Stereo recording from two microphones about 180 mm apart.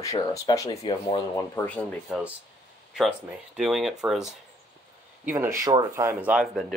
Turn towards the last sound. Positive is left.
turn(degrees=-5)  # may be behind; listen again after turning